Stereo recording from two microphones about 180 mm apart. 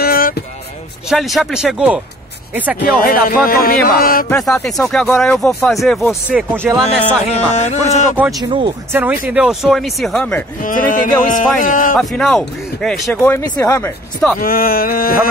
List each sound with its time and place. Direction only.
0.0 s a sound: 55° left (ahead or behind)
1.0 s speech: centre (ahead or behind)
2.8 s music: 55° left (ahead or behind)
4.3 s speech: 5° left (ahead or behind); by 6.8 s 10° right (ahead or behind)
7.2 s speech: 40° left (ahead or behind)
8.4 s speech: 25° right (ahead or behind)
9.3 s speech: 5° right (ahead or behind)
10.6 s speech: 50° left (ahead or behind)
12.0 s speech: centre (ahead or behind)
13.2 s speech: 15° left (ahead or behind)
14.4 s speech: 55° left (ahead or behind)